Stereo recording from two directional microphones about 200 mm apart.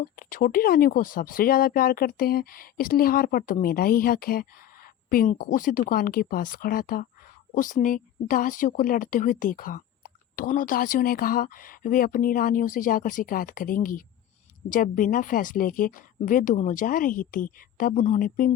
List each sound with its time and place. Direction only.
0.0 s speech: 45° left (ahead or behind)